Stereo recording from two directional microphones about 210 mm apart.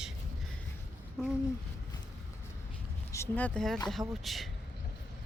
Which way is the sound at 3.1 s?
10° left (ahead or behind).